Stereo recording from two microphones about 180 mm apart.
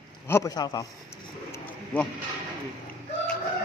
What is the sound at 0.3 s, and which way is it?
Speech, 20° left (ahead or behind).